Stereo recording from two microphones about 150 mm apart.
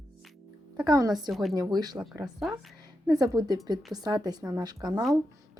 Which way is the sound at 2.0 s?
Centre (ahead or behind).